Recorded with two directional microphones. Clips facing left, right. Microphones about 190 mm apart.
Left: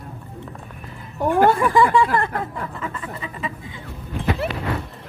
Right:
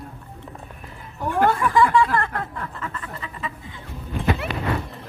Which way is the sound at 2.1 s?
10° left (ahead or behind).